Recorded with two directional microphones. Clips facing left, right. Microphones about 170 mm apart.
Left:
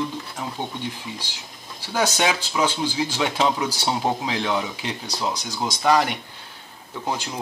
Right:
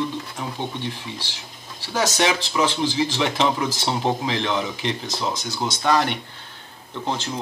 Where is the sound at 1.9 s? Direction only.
10° left (ahead or behind).